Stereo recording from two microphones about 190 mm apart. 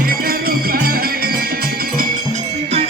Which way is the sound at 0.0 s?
50° right (ahead or behind).